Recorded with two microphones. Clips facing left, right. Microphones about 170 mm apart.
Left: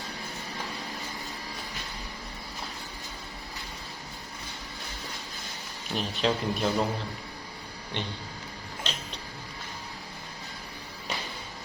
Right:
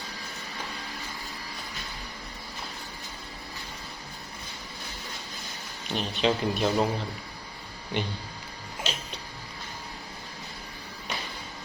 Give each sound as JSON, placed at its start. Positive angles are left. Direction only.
{"t": 5.9, "sound": "speech", "side_deg": -5}
{"t": 7.9, "sound": "speech", "side_deg": -10}
{"t": 8.9, "sound": "music", "side_deg": -5}